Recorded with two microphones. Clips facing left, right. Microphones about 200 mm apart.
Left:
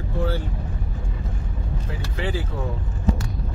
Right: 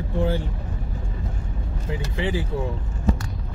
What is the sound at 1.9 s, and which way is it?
Vehicle, 20° right (ahead or behind).